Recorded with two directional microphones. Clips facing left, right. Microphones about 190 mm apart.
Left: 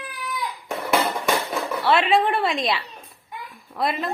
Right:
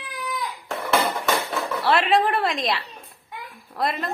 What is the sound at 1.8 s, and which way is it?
A woman's voice, centre (ahead or behind).